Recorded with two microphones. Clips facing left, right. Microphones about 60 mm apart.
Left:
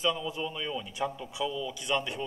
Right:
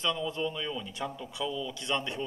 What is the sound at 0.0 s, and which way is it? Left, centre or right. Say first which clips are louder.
Speech: even; centre.